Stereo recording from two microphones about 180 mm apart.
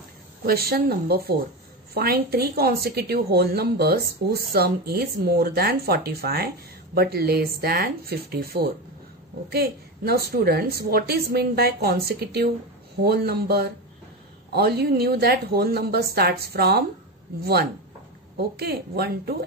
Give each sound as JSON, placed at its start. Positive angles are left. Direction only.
{"t": 0.5, "sound": "a woman's voice", "side_deg": -55}
{"t": 18.4, "sound": "a woman's voice", "side_deg": -60}